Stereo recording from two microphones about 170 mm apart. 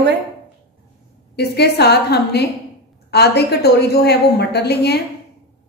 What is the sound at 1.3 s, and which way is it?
A woman's voice, 75° left (ahead or behind).